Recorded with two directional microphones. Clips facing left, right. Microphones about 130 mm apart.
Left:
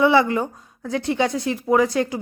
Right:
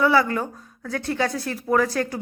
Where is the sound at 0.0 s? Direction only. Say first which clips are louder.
Left 3 dB; 20° left (ahead or behind).